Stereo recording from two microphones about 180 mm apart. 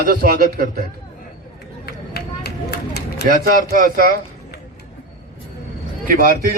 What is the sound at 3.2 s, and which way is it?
Speech, 50° right (ahead or behind).